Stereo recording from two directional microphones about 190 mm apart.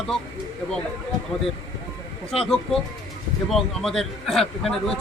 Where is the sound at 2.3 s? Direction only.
Centre (ahead or behind).